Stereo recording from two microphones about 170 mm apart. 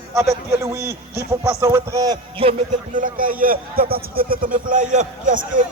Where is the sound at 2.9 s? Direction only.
50° right (ahead or behind).